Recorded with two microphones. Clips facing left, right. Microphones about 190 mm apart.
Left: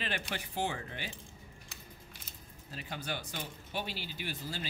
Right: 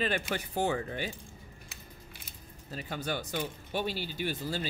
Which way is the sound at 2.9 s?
45° right (ahead or behind).